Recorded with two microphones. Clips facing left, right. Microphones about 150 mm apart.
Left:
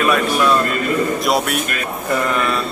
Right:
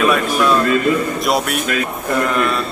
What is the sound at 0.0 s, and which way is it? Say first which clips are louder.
A man's voice: right 1 dB; centre (ahead or behind).